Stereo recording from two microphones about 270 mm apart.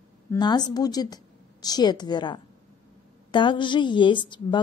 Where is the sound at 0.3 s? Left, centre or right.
Centre.